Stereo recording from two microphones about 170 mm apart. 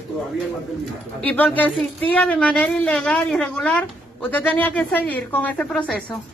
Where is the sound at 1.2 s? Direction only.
10° left (ahead or behind).